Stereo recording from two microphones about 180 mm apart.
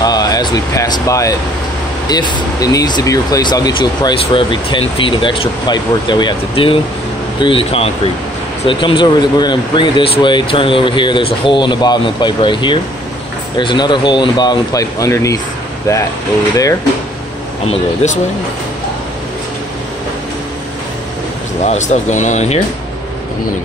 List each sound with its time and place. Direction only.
0.0 s speech: 20° left (ahead or behind)
17.6 s speech: 40° left (ahead or behind)
21.5 s speech: 40° left (ahead or behind)